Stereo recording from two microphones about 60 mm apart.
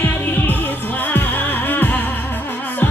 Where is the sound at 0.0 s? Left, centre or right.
Left.